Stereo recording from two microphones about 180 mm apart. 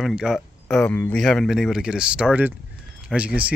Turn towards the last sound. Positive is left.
turn(degrees=-5)  # may be behind; listen again after turning